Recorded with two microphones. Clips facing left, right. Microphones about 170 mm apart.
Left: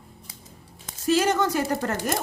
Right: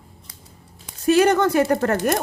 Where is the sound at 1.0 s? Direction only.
60° right (ahead or behind).